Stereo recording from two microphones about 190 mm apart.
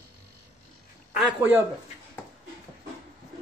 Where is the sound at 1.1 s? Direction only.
5° right (ahead or behind).